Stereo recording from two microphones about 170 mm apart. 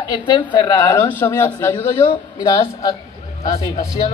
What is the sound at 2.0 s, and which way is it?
Speech, 20° left (ahead or behind).